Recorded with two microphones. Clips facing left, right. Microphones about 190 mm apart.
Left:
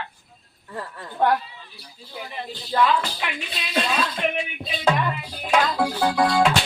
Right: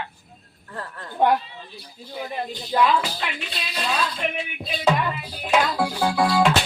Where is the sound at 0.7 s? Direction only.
10° left (ahead or behind).